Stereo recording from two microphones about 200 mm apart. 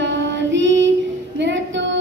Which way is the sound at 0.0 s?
65° right (ahead or behind).